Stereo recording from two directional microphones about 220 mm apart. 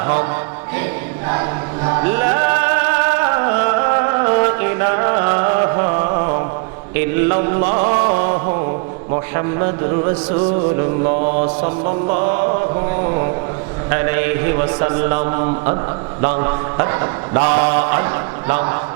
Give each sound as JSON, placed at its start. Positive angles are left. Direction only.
{"t": 0.0, "sound": "mantra", "side_deg": -20}
{"t": 1.3, "sound": "music", "side_deg": -20}
{"t": 9.3, "sound": "mantra", "side_deg": -25}
{"t": 13.9, "sound": "a man's voice", "side_deg": -15}
{"t": 14.6, "sound": "mantra", "side_deg": -25}